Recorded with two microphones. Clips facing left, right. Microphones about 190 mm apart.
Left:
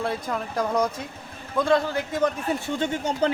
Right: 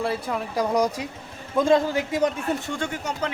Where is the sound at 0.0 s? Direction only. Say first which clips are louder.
Right 1 dB; 5° right (ahead or behind).